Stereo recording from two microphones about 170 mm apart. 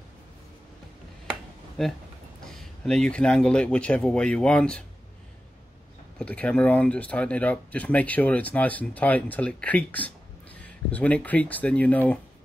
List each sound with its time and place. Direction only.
1.8 s speech: 5° left (ahead or behind)
6.1 s speech: 10° left (ahead or behind)